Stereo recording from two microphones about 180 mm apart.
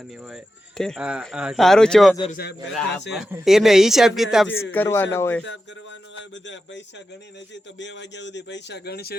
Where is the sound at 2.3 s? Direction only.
60° left (ahead or behind).